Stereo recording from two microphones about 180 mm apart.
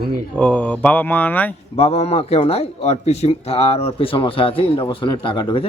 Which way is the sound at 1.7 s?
35° left (ahead or behind).